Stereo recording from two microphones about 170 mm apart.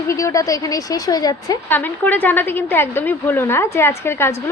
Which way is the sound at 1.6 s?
10° left (ahead or behind).